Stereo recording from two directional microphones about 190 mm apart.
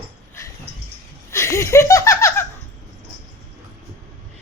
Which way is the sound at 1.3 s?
15° left (ahead or behind).